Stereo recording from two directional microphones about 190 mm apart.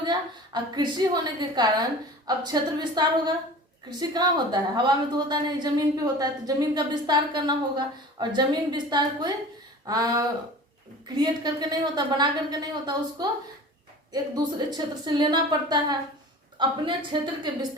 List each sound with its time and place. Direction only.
0.0 s a woman's voice: 20° right (ahead or behind)